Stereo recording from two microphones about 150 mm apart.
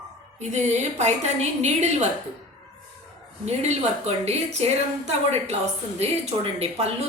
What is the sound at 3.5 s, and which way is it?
A woman's voice, 45° right (ahead or behind).